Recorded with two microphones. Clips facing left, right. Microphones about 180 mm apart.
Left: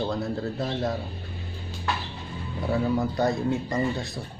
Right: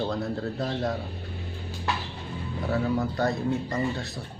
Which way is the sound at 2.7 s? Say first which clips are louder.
Left 2 dB; 15° left (ahead or behind).